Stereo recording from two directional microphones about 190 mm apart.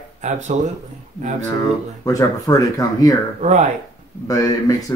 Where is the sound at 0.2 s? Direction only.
40° right (ahead or behind).